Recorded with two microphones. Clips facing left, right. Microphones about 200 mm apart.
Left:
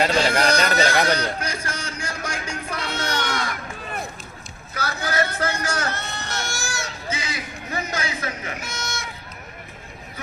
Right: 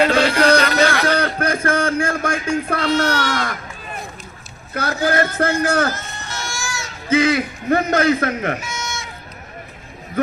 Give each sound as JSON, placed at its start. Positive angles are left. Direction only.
{"t": 0.0, "sound": "music", "side_deg": -60}
{"t": 0.3, "sound": "a sound", "side_deg": -60}
{"t": 4.7, "sound": "a man's voice", "side_deg": -55}
{"t": 5.9, "sound": "a sound", "side_deg": 70}
{"t": 7.1, "sound": "a man's voice", "side_deg": -55}
{"t": 8.6, "sound": "bleat", "side_deg": 60}